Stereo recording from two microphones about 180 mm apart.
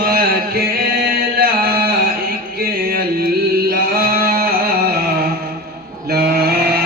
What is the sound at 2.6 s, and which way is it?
Music, 55° right (ahead or behind).